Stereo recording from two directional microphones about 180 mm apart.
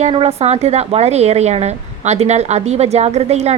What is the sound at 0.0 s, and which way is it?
A woman's voice, 30° right (ahead or behind).